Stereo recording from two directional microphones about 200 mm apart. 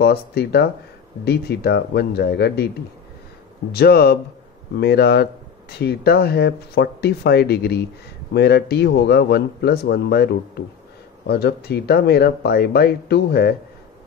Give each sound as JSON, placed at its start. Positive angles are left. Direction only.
{"t": 0.0, "sound": "a man's voice", "side_deg": 55}
{"t": 3.7, "sound": "a man's voice", "side_deg": 50}